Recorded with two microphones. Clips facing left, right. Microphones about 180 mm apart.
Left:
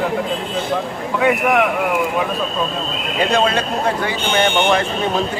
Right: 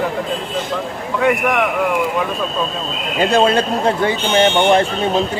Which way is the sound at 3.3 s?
30° right (ahead or behind).